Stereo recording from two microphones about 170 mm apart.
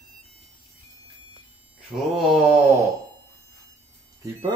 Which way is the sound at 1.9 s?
5° right (ahead or behind).